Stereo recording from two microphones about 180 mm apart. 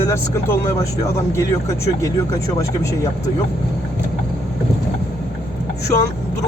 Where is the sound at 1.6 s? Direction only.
15° left (ahead or behind).